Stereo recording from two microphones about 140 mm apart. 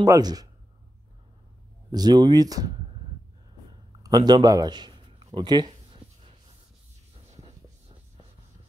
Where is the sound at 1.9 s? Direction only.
30° right (ahead or behind).